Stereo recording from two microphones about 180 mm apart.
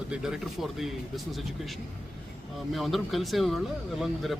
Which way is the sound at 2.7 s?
Centre (ahead or behind).